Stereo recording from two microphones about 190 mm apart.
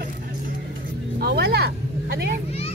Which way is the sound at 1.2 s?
60° right (ahead or behind).